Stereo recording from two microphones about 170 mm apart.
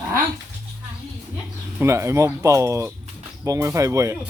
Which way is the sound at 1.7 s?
15° right (ahead or behind).